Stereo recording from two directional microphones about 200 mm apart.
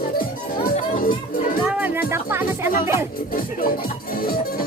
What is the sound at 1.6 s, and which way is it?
Music, 5° right (ahead or behind).